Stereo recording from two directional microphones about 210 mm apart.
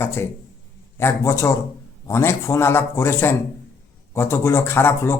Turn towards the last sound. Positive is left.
turn(degrees=10)  # may be behind; listen again after turning